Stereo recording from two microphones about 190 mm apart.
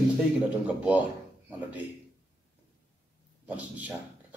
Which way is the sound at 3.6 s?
10° right (ahead or behind).